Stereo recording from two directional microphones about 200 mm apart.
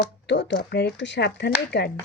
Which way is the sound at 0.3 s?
60° left (ahead or behind).